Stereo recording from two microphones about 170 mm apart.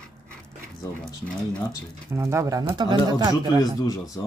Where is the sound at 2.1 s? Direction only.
15° right (ahead or behind).